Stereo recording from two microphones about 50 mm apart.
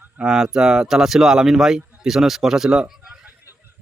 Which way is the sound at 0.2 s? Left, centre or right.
Centre.